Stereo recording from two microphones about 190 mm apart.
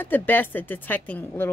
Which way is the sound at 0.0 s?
10° left (ahead or behind).